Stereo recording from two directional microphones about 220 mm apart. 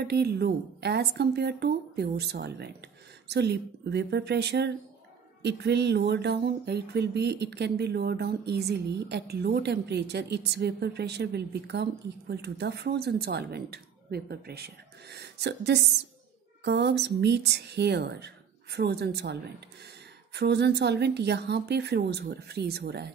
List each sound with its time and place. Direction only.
0.0 s speech: 45° right (ahead or behind)
20.3 s speech: 50° right (ahead or behind)